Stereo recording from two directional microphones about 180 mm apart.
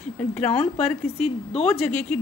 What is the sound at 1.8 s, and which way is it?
Speech, 5° left (ahead or behind).